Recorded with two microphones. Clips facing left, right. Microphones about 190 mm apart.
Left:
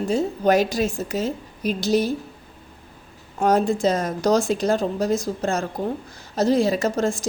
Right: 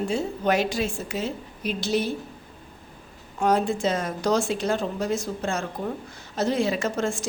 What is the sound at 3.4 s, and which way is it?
A woman's voice, 40° left (ahead or behind).